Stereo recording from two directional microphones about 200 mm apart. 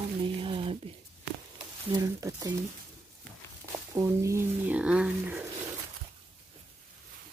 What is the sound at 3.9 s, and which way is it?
Speech, 15° right (ahead or behind).